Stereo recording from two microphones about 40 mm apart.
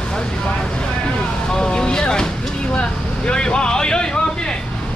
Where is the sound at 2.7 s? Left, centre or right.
Left.